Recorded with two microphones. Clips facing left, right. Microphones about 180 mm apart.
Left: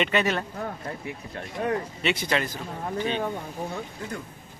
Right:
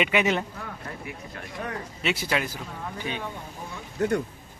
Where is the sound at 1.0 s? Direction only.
30° left (ahead or behind).